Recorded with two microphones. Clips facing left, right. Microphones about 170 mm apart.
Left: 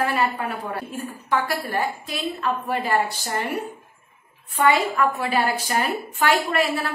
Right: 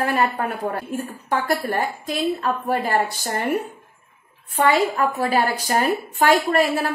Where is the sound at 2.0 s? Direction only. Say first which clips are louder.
Right 4 dB; 45° right (ahead or behind).